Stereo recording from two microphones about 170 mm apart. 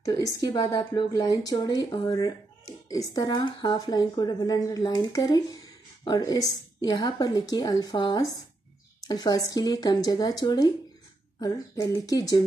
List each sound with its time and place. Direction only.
0.0 s speech: 20° left (ahead or behind)